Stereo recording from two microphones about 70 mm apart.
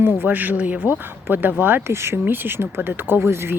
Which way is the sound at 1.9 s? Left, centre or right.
Right.